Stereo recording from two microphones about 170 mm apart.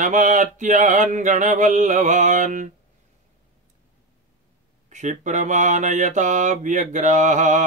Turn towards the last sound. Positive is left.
turn(degrees=-45)  # may be behind; listen again after turning